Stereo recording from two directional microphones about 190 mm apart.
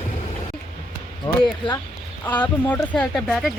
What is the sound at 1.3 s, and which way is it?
Speech, 25° left (ahead or behind).